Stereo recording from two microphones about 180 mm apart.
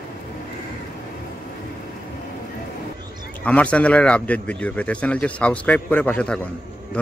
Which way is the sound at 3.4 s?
5° left (ahead or behind).